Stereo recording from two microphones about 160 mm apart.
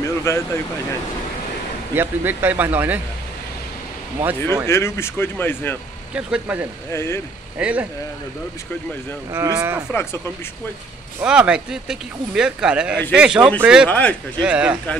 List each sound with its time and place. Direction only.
0.0 s vehicle: 20° left (ahead or behind)
2.0 s speech: 10° right (ahead or behind)
4.2 s speech: 20° right (ahead or behind)
4.6 s speech: 15° left (ahead or behind)
6.1 s speech: 10° right (ahead or behind)
6.9 s speech: 15° left (ahead or behind)
7.5 s speech: 10° right (ahead or behind)
9.3 s speech: 20° right (ahead or behind)
11.1 s speech: 5° right (ahead or behind)
13.8 s speech: 10° left (ahead or behind)
14.4 s speech: 5° right (ahead or behind)